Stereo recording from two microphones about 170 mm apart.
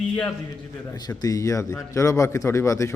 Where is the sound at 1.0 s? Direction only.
20° left (ahead or behind).